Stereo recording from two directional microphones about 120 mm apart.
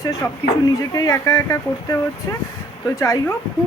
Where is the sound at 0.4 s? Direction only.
35° left (ahead or behind).